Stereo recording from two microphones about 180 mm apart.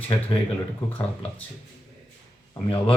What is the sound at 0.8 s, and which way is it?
Speech, 10° left (ahead or behind).